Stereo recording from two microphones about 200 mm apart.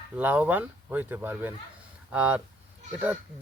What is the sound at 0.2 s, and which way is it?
Speech, 10° right (ahead or behind).